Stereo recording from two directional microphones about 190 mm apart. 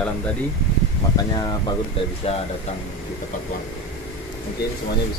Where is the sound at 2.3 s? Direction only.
30° left (ahead or behind).